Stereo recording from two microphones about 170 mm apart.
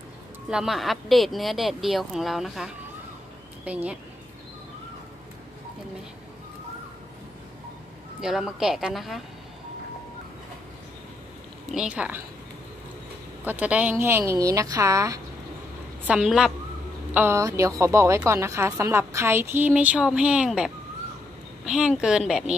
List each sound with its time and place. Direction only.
0.5 s speech: centre (ahead or behind)
8.2 s speech: centre (ahead or behind)
11.7 s speech: 5° right (ahead or behind)
13.4 s speech: 10° right (ahead or behind)
16.1 s speech: 5° right (ahead or behind)